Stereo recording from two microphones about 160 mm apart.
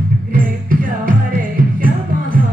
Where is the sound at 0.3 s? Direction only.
60° right (ahead or behind).